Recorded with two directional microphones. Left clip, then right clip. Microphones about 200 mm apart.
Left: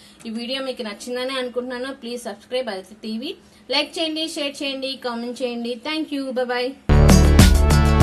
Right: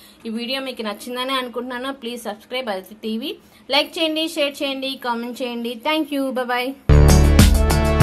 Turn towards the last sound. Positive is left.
turn(degrees=0)  # may be behind; listen again after turning